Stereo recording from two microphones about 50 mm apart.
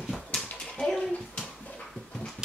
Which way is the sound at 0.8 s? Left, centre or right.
Centre.